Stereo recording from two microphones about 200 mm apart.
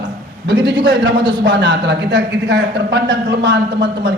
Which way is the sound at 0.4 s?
55° right (ahead or behind).